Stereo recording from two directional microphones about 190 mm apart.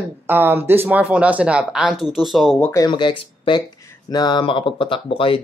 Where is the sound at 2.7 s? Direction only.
20° left (ahead or behind).